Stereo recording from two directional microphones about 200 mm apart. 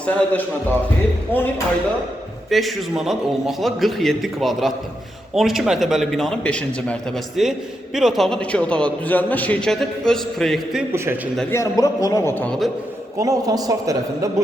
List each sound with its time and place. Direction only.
0.0 s a man's voice: 5° left (ahead or behind)
11.5 s a man's voice: 15° left (ahead or behind)
13.1 s a man's voice: 15° right (ahead or behind)